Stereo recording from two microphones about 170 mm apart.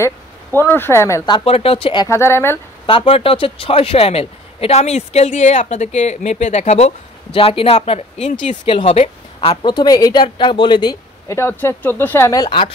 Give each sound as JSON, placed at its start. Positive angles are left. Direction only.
{"t": 0.0, "sound": "a woman's voice", "side_deg": 15}
{"t": 2.0, "sound": "a woman's voice", "side_deg": 15}
{"t": 2.9, "sound": "a man's voice", "side_deg": 35}
{"t": 8.6, "sound": "a woman's voice", "side_deg": 30}